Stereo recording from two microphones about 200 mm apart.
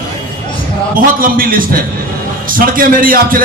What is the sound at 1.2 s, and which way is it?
A man's voice, 45° right (ahead or behind).